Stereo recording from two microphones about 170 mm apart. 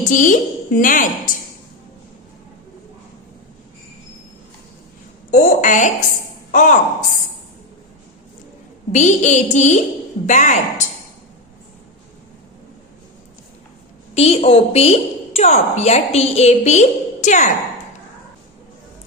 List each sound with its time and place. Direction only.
0.0 s a woman's voice: 50° left (ahead or behind)
5.3 s a woman's voice: 45° left (ahead or behind)
8.9 s a woman's voice: 45° left (ahead or behind)
14.2 s a woman's voice: 35° left (ahead or behind)